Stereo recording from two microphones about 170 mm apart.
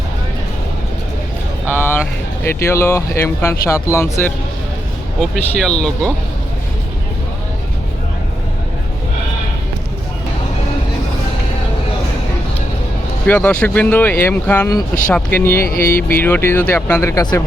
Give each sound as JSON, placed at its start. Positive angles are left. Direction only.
{"t": 1.7, "sound": "vehicle", "side_deg": 15}
{"t": 2.4, "sound": "speech", "side_deg": 15}
{"t": 5.2, "sound": "speech", "side_deg": 0}
{"t": 13.2, "sound": "speech", "side_deg": 10}
{"t": 15.6, "sound": "music", "side_deg": 60}
{"t": 16.0, "sound": "speech", "side_deg": 10}